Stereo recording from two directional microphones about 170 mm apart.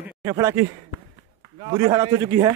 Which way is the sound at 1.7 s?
25° right (ahead or behind).